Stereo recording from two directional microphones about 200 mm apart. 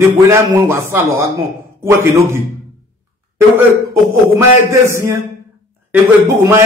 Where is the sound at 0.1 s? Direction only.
15° right (ahead or behind).